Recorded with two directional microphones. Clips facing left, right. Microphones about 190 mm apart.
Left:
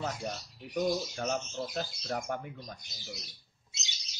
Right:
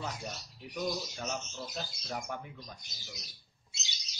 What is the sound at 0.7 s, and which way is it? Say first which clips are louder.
Speech: left 5 dB; 45° left (ahead or behind).